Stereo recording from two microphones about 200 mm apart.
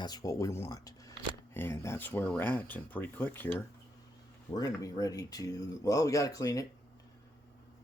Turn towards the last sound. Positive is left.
turn(degrees=15)  # may be behind; listen again after turning